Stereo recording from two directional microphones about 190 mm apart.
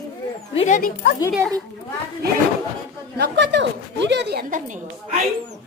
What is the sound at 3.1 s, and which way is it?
A woman's voice, 60° right (ahead or behind).